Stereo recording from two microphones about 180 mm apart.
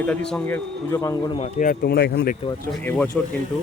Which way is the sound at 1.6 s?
55° left (ahead or behind).